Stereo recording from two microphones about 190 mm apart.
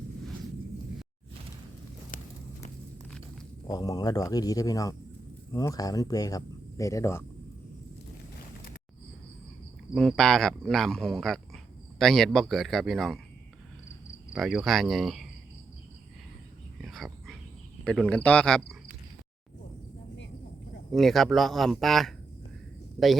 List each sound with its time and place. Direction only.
3.7 s speech: 20° left (ahead or behind)
9.9 s speech: centre (ahead or behind)
14.3 s speech: centre (ahead or behind)
16.8 s whispering: centre (ahead or behind)
18.1 s speech: 5° left (ahead or behind)
20.9 s speech: centre (ahead or behind)